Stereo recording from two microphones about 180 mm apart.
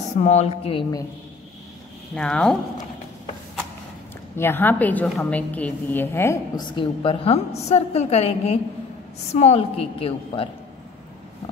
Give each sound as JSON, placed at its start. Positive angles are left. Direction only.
{"t": 0.2, "sound": "a woman's voice", "side_deg": 40}
{"t": 2.1, "sound": "speech", "side_deg": 5}
{"t": 4.4, "sound": "a woman's voice", "side_deg": 10}